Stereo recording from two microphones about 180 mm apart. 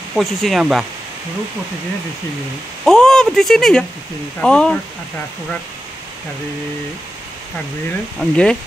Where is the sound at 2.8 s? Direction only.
5° left (ahead or behind).